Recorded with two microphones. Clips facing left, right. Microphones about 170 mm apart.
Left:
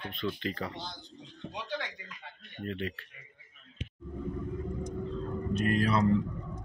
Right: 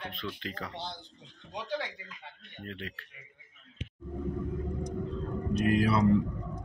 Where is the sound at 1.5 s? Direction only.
35° right (ahead or behind).